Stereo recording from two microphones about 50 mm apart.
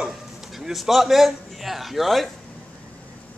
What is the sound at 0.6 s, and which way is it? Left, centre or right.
A man's voice, centre.